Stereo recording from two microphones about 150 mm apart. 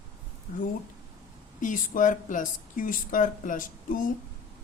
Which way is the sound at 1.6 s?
60° left (ahead or behind).